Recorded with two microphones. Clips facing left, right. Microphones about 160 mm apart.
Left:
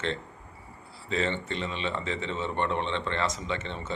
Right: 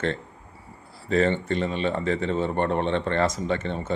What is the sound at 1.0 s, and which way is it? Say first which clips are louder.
A man's voice: right 7 dB; 50° right (ahead or behind).